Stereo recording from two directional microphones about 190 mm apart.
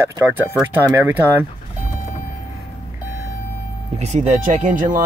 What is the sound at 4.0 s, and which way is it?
Speech, 35° right (ahead or behind).